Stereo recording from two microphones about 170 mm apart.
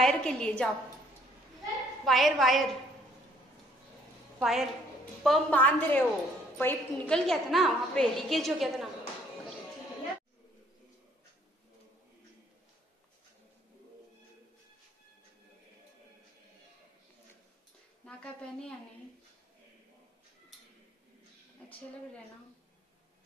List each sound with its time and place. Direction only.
0.0 s a woman's voice: 5° left (ahead or behind)
2.0 s a woman's voice: centre (ahead or behind)
4.4 s a woman's voice: centre (ahead or behind)
7.2 s a woman's voice: centre (ahead or behind)
18.0 s speech: 5° left (ahead or behind)